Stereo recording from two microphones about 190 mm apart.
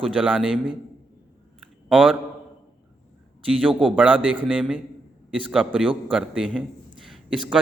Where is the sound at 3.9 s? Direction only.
5° right (ahead or behind).